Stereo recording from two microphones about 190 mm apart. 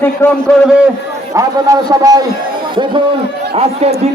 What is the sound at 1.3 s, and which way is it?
Speech, 20° right (ahead or behind).